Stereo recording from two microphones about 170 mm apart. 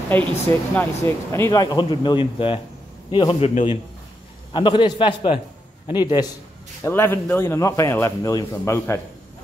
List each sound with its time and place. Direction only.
0.1 s a man's voice: 10° left (ahead or behind)
6.8 s a man's voice: 10° left (ahead or behind)